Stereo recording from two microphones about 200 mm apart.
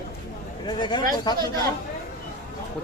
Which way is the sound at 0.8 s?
20° left (ahead or behind).